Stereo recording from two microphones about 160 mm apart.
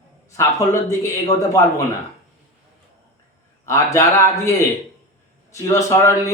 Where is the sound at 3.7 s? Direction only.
20° left (ahead or behind).